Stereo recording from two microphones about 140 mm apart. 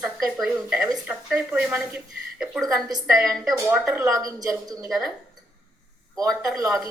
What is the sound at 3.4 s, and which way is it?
A woman's voice, 15° right (ahead or behind).